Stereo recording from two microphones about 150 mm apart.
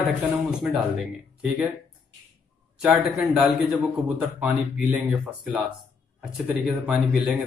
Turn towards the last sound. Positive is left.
turn(degrees=0)  # may be behind; listen again after turning